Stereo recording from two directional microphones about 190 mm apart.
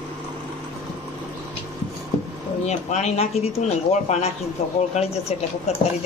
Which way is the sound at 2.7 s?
35° left (ahead or behind).